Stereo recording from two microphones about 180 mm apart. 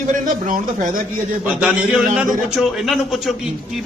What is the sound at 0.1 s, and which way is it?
Speech, 45° right (ahead or behind).